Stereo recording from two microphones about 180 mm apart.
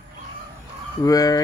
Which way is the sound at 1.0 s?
20° left (ahead or behind).